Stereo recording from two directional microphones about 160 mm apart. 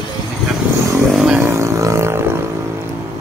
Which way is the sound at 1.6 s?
20° right (ahead or behind).